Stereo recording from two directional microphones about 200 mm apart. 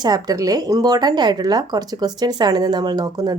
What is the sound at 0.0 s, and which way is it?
Speech, 20° right (ahead or behind).